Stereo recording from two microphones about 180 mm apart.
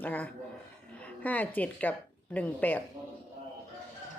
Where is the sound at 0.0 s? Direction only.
10° left (ahead or behind).